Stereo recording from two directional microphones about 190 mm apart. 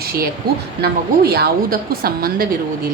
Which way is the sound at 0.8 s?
55° right (ahead or behind).